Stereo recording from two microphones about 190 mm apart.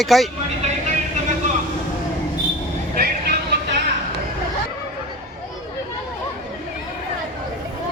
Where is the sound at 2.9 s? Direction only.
50° right (ahead or behind).